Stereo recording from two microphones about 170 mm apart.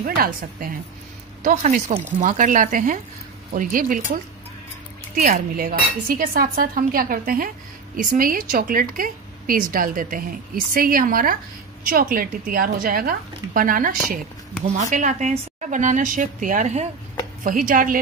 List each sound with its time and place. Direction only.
0.0 s cutlery: 55° right (ahead or behind)
1.4 s a woman's voice: 45° right (ahead or behind)
5.6 s cutlery: 60° right (ahead or behind)
14.8 s a woman's voice: 45° right (ahead or behind)